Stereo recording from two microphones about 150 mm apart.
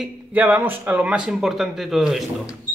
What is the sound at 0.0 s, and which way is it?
Speech, 10° right (ahead or behind).